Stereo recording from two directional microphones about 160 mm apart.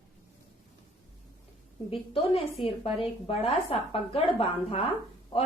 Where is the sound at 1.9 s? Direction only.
35° left (ahead or behind).